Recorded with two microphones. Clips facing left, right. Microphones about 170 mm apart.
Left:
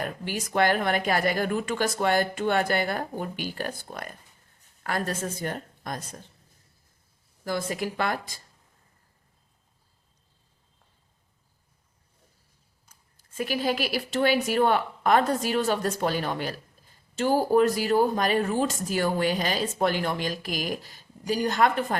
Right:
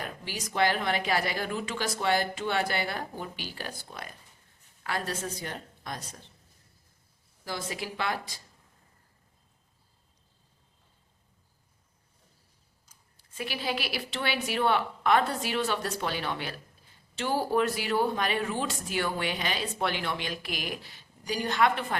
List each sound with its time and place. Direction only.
0.0 s speech: 50° left (ahead or behind)
7.4 s speech: 50° left (ahead or behind)
12.8 s speech: 55° left (ahead or behind)